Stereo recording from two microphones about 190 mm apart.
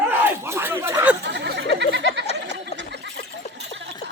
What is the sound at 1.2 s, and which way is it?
Speech, 65° right (ahead or behind).